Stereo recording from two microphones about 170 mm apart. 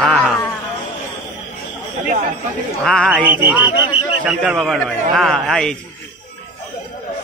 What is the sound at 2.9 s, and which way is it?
Speech, 5° left (ahead or behind).